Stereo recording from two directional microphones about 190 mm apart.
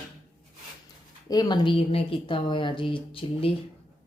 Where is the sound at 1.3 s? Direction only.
20° left (ahead or behind).